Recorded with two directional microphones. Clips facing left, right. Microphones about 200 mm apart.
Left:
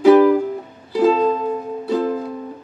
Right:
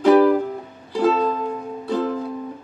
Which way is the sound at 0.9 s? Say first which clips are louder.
Left 4 dB; 15° left (ahead or behind).